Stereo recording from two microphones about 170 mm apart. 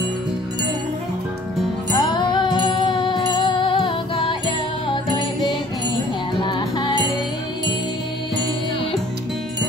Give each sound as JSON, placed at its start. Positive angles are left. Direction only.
{"t": 1.9, "sound": "music", "side_deg": 25}